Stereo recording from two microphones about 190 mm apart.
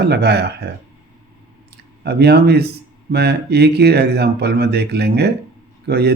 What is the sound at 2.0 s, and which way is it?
Speech, 60° right (ahead or behind).